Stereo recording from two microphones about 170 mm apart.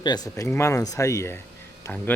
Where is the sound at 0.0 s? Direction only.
25° left (ahead or behind).